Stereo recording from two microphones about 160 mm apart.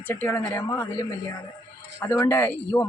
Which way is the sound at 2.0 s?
15° left (ahead or behind).